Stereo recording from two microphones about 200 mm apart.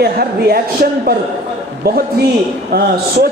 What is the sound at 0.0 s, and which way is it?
A woman's voice, 50° right (ahead or behind).